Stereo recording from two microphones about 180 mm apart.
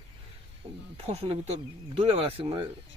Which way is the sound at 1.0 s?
35° right (ahead or behind).